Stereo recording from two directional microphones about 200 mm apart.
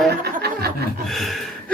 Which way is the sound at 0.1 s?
50° right (ahead or behind).